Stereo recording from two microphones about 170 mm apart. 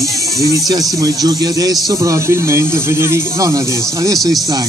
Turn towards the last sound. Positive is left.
turn(degrees=-20)  # may be behind; listen again after turning